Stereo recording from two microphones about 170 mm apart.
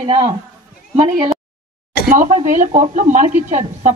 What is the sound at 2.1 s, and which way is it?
A woman's voice, 50° right (ahead or behind).